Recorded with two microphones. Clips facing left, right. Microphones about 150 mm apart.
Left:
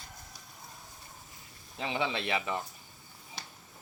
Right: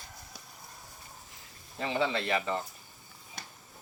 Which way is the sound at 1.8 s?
15° left (ahead or behind).